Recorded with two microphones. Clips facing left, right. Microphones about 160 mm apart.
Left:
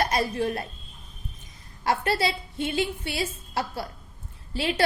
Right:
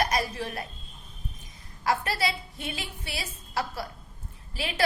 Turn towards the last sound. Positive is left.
turn(degrees=30)  # may be behind; listen again after turning